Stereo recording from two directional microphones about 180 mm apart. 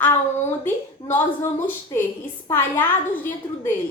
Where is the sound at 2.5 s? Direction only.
10° left (ahead or behind).